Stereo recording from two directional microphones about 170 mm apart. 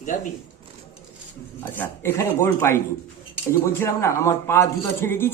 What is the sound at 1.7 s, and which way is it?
Speech, 10° left (ahead or behind).